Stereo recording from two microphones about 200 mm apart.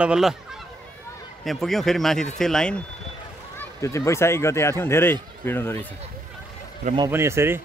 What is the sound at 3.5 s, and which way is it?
Speech, 15° left (ahead or behind).